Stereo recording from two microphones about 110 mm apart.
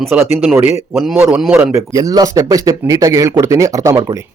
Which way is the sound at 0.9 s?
Centre (ahead or behind).